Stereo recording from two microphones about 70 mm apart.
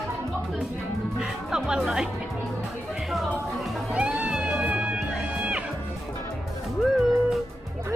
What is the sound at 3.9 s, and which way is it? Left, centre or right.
Music, centre.